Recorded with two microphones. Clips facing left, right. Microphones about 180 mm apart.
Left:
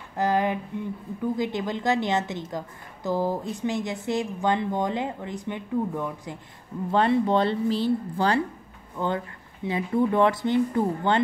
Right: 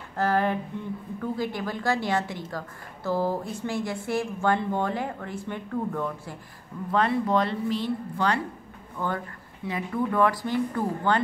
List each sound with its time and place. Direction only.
0.1 s a sound: 15° left (ahead or behind)
1.2 s a woman's voice: 15° left (ahead or behind)
6.9 s a woman's voice: 30° left (ahead or behind)
8.9 s a woman's voice: 20° left (ahead or behind)